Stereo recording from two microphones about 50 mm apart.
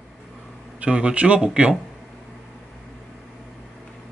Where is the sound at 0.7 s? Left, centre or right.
Right.